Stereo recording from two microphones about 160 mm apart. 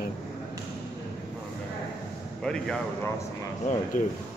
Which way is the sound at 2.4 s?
5° left (ahead or behind).